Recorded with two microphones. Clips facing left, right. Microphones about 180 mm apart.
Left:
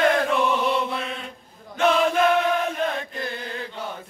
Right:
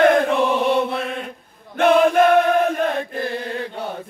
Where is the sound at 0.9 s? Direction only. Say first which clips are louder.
Right 5 dB; 50° right (ahead or behind).